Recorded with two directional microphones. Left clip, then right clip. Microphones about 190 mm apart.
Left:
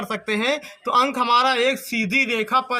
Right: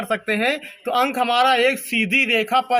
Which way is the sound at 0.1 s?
40° left (ahead or behind).